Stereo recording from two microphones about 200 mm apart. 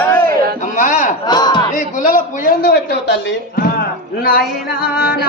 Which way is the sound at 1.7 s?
40° left (ahead or behind).